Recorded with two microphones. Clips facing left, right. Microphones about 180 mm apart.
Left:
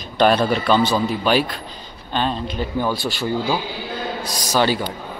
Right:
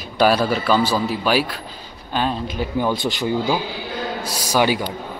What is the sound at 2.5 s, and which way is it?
Speech, 15° right (ahead or behind).